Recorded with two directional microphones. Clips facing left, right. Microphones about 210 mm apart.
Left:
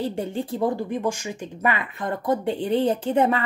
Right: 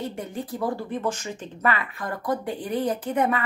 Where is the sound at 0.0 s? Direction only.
30° left (ahead or behind).